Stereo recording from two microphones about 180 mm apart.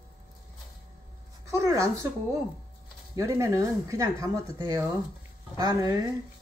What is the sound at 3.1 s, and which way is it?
Speech, 15° right (ahead or behind).